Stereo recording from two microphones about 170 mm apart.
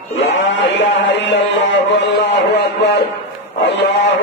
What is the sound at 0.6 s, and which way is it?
Speech, 90° left.